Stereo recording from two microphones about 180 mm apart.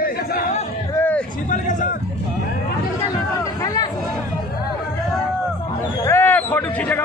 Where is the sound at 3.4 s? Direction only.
20° left (ahead or behind).